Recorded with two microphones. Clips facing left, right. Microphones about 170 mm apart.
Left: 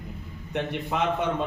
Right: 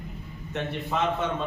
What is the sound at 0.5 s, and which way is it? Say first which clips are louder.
Speech: left 1 dB; 15° left (ahead or behind).